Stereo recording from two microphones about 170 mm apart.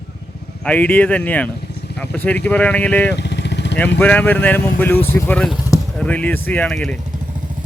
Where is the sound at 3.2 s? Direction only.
90° left.